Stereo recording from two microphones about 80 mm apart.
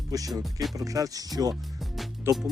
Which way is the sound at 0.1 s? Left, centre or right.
Right.